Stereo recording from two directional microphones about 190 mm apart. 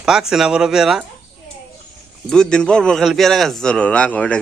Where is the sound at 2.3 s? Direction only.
5° left (ahead or behind).